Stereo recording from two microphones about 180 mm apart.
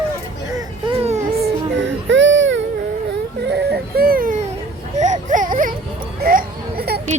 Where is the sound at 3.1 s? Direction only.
70° right (ahead or behind); by 4.4 s 50° right (ahead or behind).